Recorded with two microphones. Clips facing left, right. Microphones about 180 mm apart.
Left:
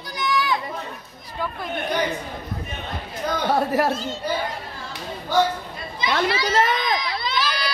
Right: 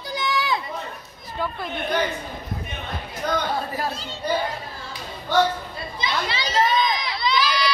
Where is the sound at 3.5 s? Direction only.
80° left.